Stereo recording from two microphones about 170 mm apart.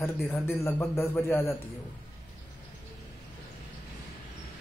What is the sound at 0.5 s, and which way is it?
A man's voice, 15° left (ahead or behind).